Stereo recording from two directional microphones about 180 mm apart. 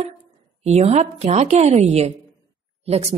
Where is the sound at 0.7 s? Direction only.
35° right (ahead or behind).